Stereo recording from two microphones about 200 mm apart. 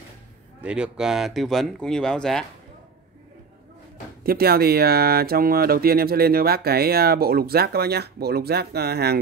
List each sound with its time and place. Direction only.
0.6 s speech: 5° right (ahead or behind)
4.2 s speech: 50° right (ahead or behind)